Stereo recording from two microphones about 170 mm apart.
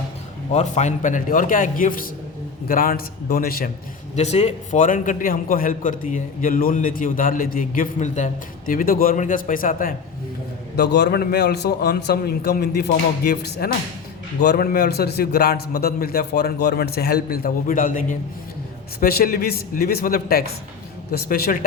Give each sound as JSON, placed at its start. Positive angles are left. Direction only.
{"t": 0.5, "sound": "a man's voice", "side_deg": 45}
{"t": 4.1, "sound": "a man's voice", "side_deg": 40}
{"t": 10.9, "sound": "a man's voice", "side_deg": 75}
{"t": 18.9, "sound": "a man's voice", "side_deg": 65}